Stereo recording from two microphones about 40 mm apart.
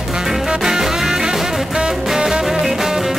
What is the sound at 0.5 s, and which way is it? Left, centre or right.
Music, centre.